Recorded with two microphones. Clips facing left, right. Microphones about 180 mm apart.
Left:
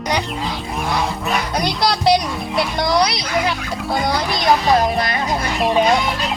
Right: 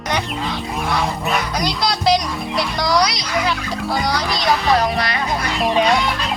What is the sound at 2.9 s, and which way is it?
A child's voice, 30° left (ahead or behind).